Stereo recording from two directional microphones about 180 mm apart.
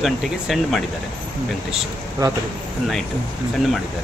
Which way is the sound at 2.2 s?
20° right (ahead or behind).